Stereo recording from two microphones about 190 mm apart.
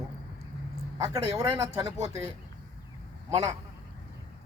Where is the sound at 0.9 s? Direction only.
20° right (ahead or behind).